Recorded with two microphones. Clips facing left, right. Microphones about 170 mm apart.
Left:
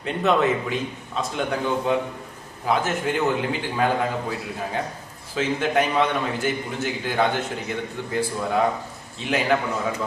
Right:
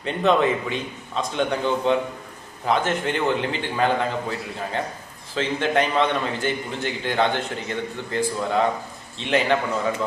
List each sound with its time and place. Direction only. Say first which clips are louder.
0.0 s a man's voice: right 1 dB; 5° left (ahead or behind)